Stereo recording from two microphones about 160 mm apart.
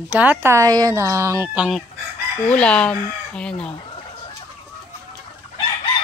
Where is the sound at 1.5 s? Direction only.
5° right (ahead or behind).